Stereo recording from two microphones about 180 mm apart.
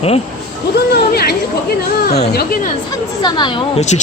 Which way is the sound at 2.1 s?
60° left (ahead or behind).